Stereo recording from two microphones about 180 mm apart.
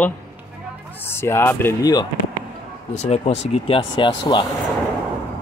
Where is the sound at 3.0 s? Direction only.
35° left (ahead or behind).